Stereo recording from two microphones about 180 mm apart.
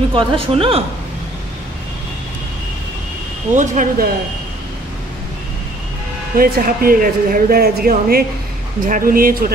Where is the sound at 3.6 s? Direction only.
45° right (ahead or behind).